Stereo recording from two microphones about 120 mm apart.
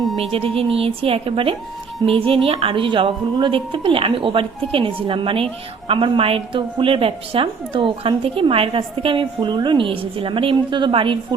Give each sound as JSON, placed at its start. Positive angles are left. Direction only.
{"t": 0.2, "sound": "a woman's voice", "side_deg": -50}